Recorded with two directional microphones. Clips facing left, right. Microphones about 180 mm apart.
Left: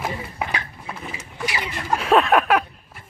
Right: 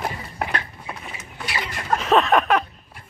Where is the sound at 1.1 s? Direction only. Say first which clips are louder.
Left 2 dB; 10° left (ahead or behind).